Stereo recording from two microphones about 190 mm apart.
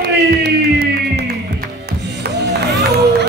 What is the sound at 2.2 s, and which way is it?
Music, 60° right (ahead or behind).